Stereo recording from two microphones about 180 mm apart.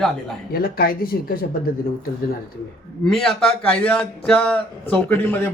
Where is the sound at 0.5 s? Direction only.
55° left (ahead or behind).